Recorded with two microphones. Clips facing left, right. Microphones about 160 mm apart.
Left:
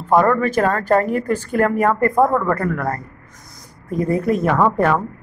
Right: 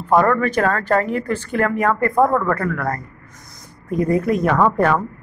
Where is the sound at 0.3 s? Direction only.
5° left (ahead or behind).